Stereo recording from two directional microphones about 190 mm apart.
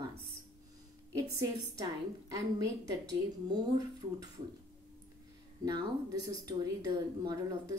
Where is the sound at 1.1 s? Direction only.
20° right (ahead or behind).